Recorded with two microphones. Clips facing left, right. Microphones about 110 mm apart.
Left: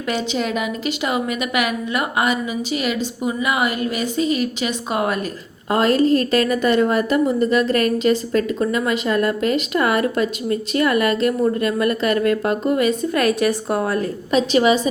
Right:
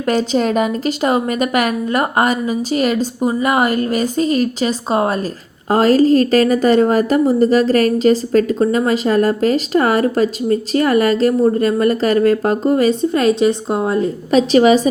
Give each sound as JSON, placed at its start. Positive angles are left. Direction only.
{"t": 0.0, "sound": "a woman's voice", "side_deg": -40}
{"t": 14.3, "sound": "a woman's voice", "side_deg": -35}